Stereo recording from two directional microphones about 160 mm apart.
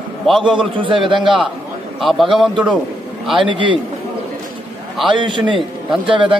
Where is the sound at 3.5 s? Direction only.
30° right (ahead or behind).